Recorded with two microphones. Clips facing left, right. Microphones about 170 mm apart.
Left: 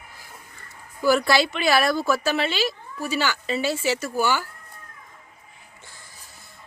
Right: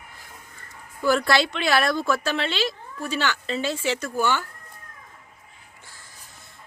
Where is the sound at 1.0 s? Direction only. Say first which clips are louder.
Left 1 dB; 5° left (ahead or behind).